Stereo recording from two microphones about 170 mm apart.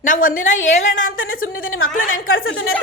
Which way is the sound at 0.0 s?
50° left (ahead or behind).